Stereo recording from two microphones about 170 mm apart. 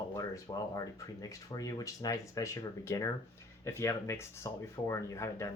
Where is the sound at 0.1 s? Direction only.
15° left (ahead or behind).